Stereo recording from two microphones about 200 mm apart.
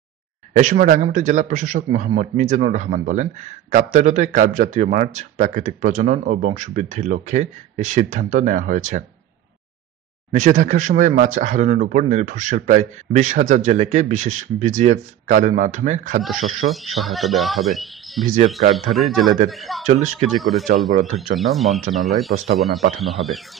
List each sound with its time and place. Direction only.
0.5 s speech: 40° right (ahead or behind)
10.3 s speech: 40° right (ahead or behind)
16.7 s speech: centre (ahead or behind)
19.9 s speech: 35° right (ahead or behind)
20.2 s speech: centre (ahead or behind)
20.9 s speech: 40° right (ahead or behind)
21.4 s speech: centre (ahead or behind)